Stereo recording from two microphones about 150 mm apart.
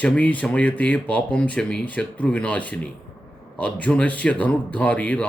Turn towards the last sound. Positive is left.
turn(degrees=10)  # may be behind; listen again after turning